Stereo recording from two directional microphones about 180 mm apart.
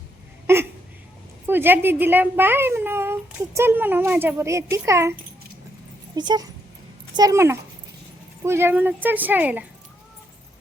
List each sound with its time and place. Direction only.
0.4 s hiccup: 15° right (ahead or behind)
1.5 s a woman's voice: 10° right (ahead or behind)
6.1 s a woman's voice: 25° right (ahead or behind)